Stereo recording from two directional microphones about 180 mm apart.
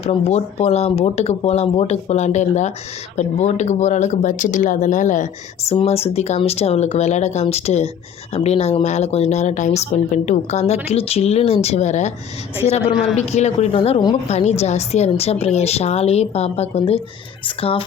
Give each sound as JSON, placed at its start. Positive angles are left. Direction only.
{"t": 0.0, "sound": "speech", "side_deg": 35}
{"t": 13.1, "sound": "speech", "side_deg": 40}
{"t": 14.3, "sound": "speech", "side_deg": 40}